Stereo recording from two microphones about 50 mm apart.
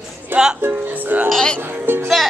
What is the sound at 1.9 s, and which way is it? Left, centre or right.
Music, right.